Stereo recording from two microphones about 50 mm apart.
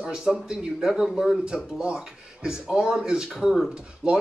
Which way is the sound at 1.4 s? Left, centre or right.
Centre.